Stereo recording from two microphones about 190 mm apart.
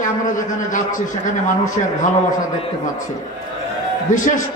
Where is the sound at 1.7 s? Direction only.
40° left (ahead or behind).